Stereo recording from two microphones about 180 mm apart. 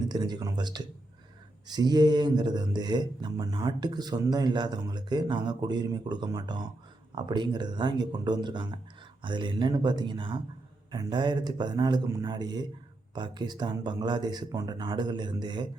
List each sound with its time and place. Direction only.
0.1 s speech: 20° right (ahead or behind)